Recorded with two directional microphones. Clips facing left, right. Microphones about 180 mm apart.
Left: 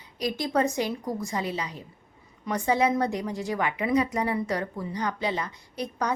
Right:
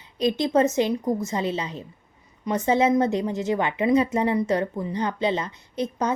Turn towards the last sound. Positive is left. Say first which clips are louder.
# right 4 dB
turn(degrees=-25)  # may be behind; listen again after turning